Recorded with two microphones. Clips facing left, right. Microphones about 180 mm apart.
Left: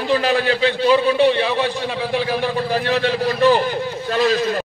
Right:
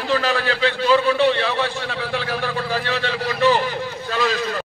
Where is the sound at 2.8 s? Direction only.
45° left (ahead or behind).